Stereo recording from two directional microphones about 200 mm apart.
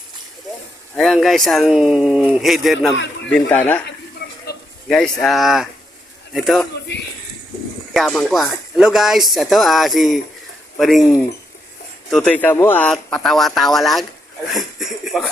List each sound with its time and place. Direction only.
0.9 s speech: centre (ahead or behind)
2.9 s a man's voice: 65° left (ahead or behind)
3.3 s speech: 10° left (ahead or behind)
4.5 s a sound: 50° left (ahead or behind)
4.9 s speech: 5° left (ahead or behind)
7.9 s speech: centre (ahead or behind)
12.1 s speech: 5° left (ahead or behind)
14.5 s a sound: centre (ahead or behind)